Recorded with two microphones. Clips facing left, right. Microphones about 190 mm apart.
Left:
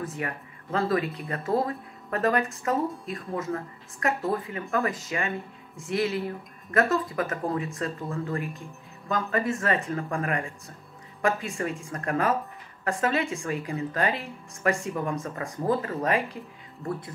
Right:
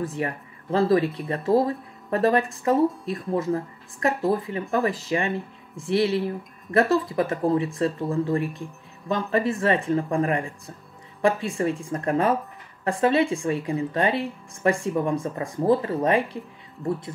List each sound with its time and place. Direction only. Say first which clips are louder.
0.0 s speech: right 5 dB; 35° right (ahead or behind)